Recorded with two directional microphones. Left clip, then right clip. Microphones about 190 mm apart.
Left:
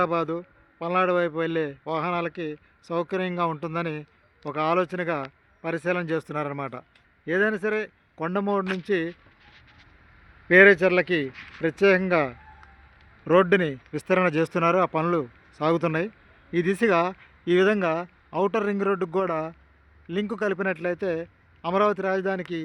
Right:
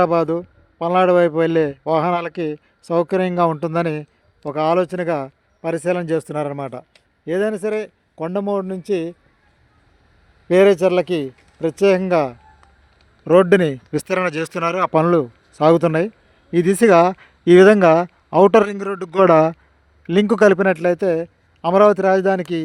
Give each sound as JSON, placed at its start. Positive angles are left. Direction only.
{"t": 0.0, "sound": "a man's voice", "side_deg": -45}
{"t": 10.5, "sound": "a man's voice", "side_deg": -40}